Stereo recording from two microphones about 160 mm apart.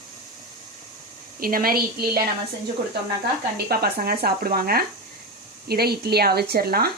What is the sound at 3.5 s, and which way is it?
A woman's voice, 75° right (ahead or behind).